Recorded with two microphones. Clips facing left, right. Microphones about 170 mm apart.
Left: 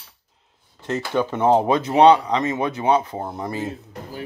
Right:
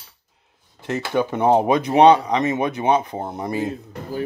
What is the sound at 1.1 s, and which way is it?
Speech, 15° right (ahead or behind).